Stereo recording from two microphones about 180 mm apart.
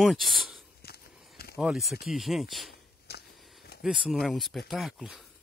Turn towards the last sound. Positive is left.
turn(degrees=0)  # may be behind; listen again after turning